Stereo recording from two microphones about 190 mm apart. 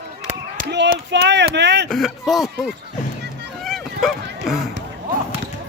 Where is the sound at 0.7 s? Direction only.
65° right (ahead or behind).